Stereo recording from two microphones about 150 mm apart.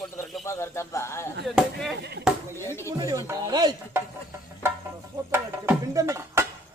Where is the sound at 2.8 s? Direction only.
20° right (ahead or behind).